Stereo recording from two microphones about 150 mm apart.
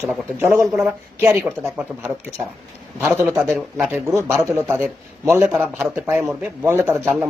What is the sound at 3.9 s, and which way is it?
A man's voice, 15° right (ahead or behind).